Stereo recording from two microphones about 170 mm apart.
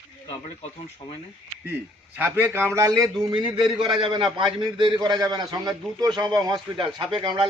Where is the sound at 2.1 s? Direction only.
10° right (ahead or behind); by 7.4 s 30° right (ahead or behind).